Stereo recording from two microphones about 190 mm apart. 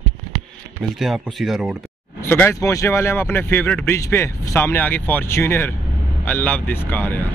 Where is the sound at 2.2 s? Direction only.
10° left (ahead or behind).